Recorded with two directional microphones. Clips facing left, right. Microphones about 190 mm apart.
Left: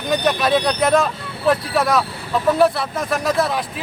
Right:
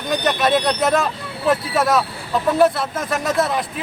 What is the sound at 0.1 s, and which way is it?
Speech, centre (ahead or behind).